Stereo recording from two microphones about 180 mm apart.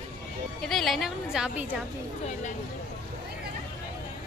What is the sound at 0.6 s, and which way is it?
A woman's voice, centre (ahead or behind).